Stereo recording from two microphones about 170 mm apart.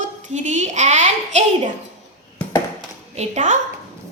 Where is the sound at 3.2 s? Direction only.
45° right (ahead or behind).